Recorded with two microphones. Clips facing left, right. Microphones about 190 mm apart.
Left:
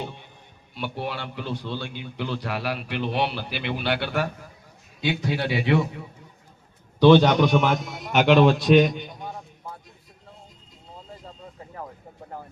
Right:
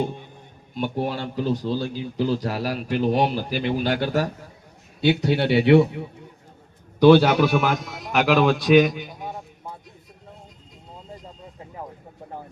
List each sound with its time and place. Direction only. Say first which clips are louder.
0.7 s a man's voice: right 5 dB; 45° right (ahead or behind)
4.9 s a man's voice: right 6 dB; 30° right (ahead or behind)
7.0 s a man's voice: right 1 dB; 10° right (ahead or behind)